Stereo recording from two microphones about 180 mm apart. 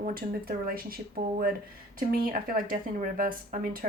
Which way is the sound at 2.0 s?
50° right (ahead or behind).